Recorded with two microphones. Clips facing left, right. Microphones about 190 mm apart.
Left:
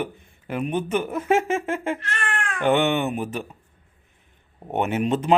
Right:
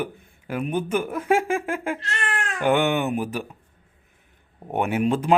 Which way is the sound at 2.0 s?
20° right (ahead or behind).